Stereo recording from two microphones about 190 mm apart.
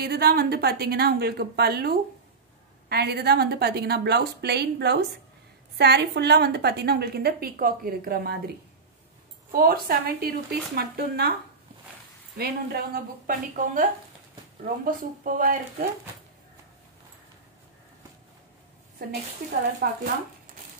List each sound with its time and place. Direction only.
0.0 s a woman's voice: 55° right (ahead or behind)
9.5 s speech: 50° right (ahead or behind)
12.4 s speech: 55° right (ahead or behind)
19.8 s a woman's voice: 55° right (ahead or behind)